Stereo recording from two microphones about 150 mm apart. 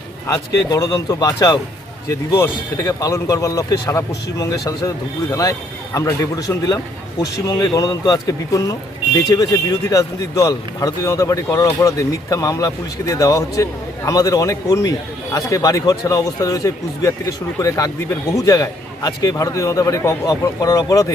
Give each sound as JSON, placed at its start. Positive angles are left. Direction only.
{"t": 0.3, "sound": "speech", "side_deg": 25}